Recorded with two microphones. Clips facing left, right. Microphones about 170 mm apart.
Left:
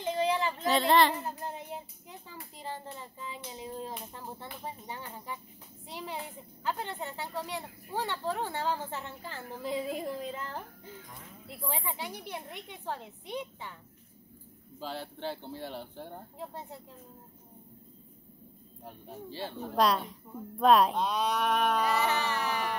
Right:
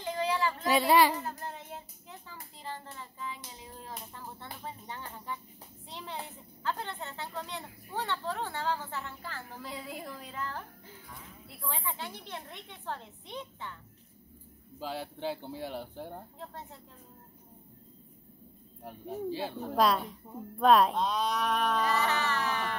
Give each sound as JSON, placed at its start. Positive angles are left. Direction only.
{"t": 0.0, "sound": "a sound", "side_deg": 20}
{"t": 0.7, "sound": "speech", "side_deg": -10}
{"t": 1.2, "sound": "child singing", "side_deg": 15}
{"t": 3.5, "sound": "a child's voice", "side_deg": 20}
{"t": 14.8, "sound": "speech", "side_deg": -10}
{"t": 18.9, "sound": "a woman's voice", "side_deg": -10}